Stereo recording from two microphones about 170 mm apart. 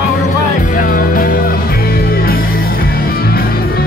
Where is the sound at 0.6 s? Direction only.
55° left (ahead or behind).